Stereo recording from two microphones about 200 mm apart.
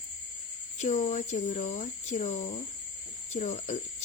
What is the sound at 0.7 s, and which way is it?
Speech, 35° left (ahead or behind).